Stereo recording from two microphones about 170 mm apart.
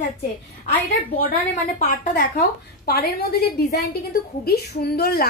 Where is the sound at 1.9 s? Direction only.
60° left (ahead or behind).